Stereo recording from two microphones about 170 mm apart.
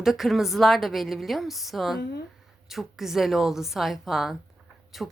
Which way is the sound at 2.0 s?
75° left (ahead or behind).